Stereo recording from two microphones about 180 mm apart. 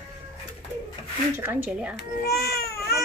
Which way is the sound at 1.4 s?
10° right (ahead or behind).